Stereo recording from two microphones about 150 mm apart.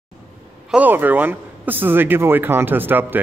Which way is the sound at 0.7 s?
10° right (ahead or behind).